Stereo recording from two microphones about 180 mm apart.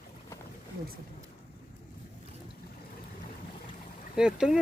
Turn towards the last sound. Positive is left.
turn(degrees=-5)  # may be behind; listen again after turning